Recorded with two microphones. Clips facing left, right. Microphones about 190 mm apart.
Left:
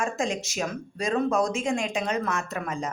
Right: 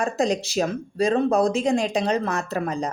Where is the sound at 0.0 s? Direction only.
35° right (ahead or behind).